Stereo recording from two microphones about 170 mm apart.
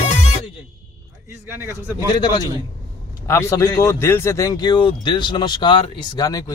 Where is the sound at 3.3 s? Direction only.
15° left (ahead or behind).